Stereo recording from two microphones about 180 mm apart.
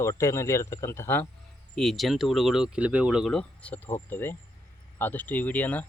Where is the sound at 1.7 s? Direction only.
Centre (ahead or behind).